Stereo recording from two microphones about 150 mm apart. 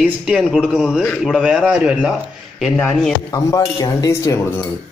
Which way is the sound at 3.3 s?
25° left (ahead or behind).